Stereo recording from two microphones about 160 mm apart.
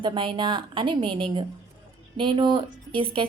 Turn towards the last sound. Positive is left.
turn(degrees=-30)  # may be behind; listen again after turning